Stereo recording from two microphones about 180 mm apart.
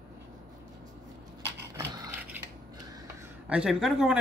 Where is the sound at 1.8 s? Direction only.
10° right (ahead or behind).